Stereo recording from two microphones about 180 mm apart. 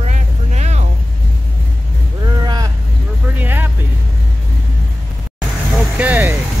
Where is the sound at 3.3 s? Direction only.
10° right (ahead or behind).